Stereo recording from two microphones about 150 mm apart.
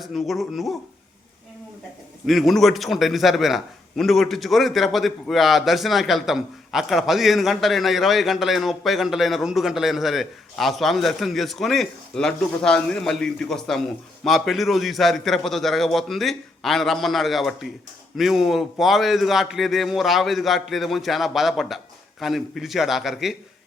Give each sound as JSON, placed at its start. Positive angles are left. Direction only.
{"t": 0.0, "sound": "a man's voice", "side_deg": 0}
{"t": 2.2, "sound": "a man's voice", "side_deg": 0}